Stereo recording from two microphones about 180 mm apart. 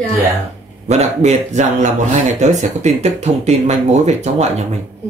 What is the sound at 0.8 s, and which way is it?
Speech, 40° right (ahead or behind).